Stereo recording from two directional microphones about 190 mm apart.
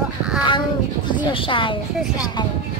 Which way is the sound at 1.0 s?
25° left (ahead or behind).